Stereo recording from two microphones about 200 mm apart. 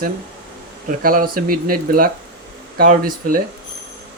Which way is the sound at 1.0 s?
45° right (ahead or behind).